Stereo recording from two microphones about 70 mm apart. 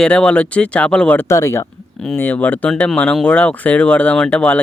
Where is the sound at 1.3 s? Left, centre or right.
Left.